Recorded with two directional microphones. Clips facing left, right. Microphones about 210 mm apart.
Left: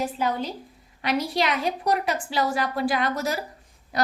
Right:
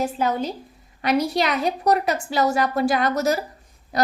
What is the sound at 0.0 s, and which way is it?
A woman's voice, 45° right (ahead or behind).